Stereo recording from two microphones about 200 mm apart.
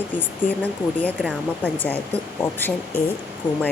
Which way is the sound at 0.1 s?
10° left (ahead or behind).